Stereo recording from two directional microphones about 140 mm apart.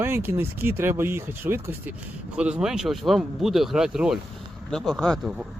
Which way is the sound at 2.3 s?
5° right (ahead or behind).